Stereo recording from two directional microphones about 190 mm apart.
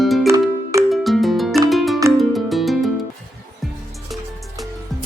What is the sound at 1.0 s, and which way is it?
Music, centre (ahead or behind).